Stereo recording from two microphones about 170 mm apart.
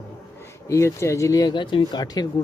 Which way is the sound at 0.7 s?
15° left (ahead or behind).